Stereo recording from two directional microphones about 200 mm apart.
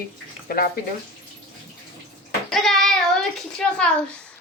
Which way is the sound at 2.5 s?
Centre (ahead or behind).